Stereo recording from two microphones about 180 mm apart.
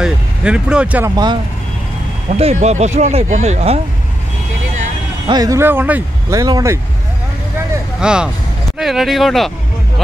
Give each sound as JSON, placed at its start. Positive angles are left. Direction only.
{"t": 0.0, "sound": "speech", "side_deg": -5}
{"t": 1.1, "sound": "speech", "side_deg": -25}
{"t": 2.2, "sound": "speech", "side_deg": -40}
{"t": 5.2, "sound": "speech", "side_deg": -20}
{"t": 8.0, "sound": "speech", "side_deg": -5}